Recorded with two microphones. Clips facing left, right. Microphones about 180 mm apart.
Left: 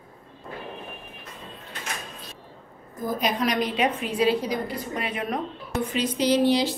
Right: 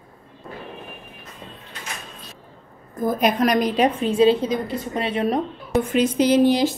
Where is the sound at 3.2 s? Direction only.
50° right (ahead or behind); by 5.4 s 30° right (ahead or behind).